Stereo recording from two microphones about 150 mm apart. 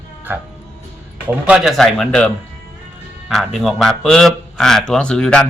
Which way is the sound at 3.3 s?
Centre (ahead or behind).